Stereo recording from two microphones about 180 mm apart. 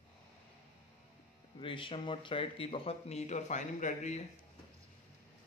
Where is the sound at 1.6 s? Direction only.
30° left (ahead or behind).